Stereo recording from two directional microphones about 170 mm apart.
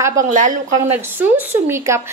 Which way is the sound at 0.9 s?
10° right (ahead or behind).